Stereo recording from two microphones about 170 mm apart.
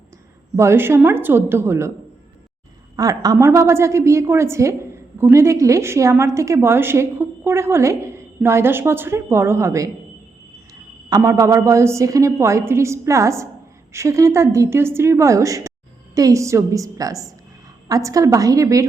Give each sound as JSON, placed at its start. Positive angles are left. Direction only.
{"t": 0.5, "sound": "a woman's voice", "side_deg": -15}
{"t": 2.9, "sound": "a woman's voice", "side_deg": -20}
{"t": 11.1, "sound": "a woman's voice", "side_deg": -20}